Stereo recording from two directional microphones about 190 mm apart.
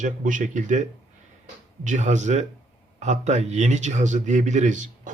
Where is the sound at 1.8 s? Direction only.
40° right (ahead or behind).